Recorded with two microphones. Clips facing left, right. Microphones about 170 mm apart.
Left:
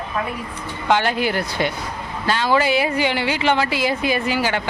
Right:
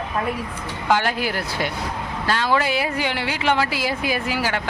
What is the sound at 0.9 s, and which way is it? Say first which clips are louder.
Speech: left 2 dB; centre (ahead or behind).